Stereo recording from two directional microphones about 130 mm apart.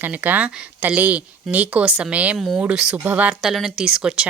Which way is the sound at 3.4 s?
Centre (ahead or behind).